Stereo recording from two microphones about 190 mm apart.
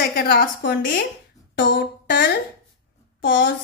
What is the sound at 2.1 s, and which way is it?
Speech, 70° left (ahead or behind).